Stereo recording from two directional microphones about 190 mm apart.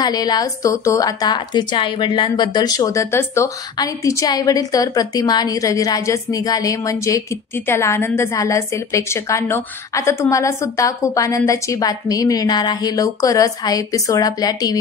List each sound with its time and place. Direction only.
0.0 s a woman's voice: 20° left (ahead or behind)